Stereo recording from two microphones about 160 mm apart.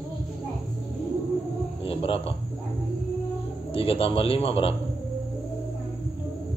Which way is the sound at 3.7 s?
35° left (ahead or behind).